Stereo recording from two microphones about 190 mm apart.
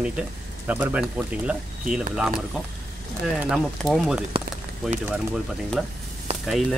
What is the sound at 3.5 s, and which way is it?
Speech, centre (ahead or behind).